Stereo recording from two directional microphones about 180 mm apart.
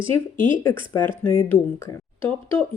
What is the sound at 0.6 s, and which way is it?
Speech, 15° left (ahead or behind).